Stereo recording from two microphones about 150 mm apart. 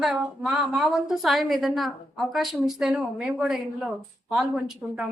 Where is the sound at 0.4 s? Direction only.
5° right (ahead or behind).